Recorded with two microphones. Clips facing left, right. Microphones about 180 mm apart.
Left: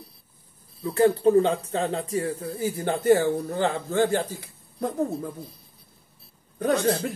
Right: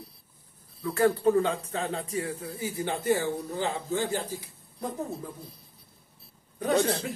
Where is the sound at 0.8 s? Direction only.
25° left (ahead or behind); by 4.2 s 60° left (ahead or behind).